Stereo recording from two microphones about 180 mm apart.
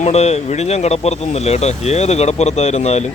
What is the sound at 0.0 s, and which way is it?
Speech, 35° left (ahead or behind).